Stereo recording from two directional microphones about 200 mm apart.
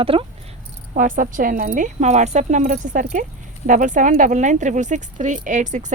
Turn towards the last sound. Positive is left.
turn(degrees=-40)  # may be behind; listen again after turning